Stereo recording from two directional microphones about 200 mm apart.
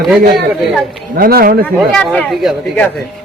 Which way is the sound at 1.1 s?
45° right (ahead or behind).